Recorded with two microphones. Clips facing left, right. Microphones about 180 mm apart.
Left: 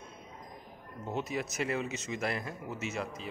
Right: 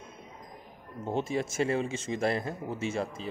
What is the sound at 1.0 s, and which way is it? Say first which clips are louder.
Speech: right 5 dB; 30° right (ahead or behind).